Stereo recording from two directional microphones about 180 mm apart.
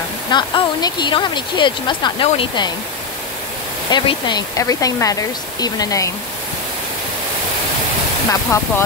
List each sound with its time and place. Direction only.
0.3 s speech: 25° left (ahead or behind)
3.9 s speech: 25° left (ahead or behind)
8.3 s speech: 15° left (ahead or behind)